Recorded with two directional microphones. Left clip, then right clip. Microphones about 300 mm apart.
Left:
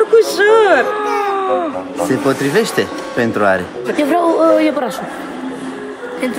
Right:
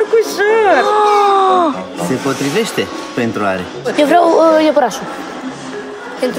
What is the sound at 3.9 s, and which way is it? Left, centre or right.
Speech, right.